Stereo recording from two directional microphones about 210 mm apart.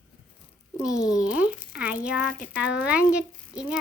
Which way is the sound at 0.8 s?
5° right (ahead or behind).